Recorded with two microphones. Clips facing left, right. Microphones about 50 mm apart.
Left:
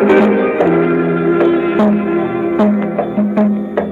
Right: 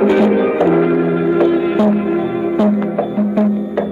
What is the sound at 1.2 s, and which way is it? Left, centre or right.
Music, left.